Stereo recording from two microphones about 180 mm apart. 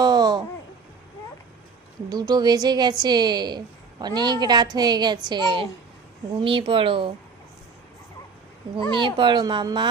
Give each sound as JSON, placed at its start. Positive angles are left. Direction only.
{"t": 0.0, "sound": "a sound", "side_deg": -20}
{"t": 2.0, "sound": "a woman's voice", "side_deg": -20}
{"t": 8.9, "sound": "a woman's voice", "side_deg": -25}